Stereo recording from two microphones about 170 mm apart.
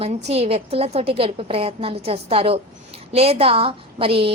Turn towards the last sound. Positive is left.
turn(degrees=-35)  # may be behind; listen again after turning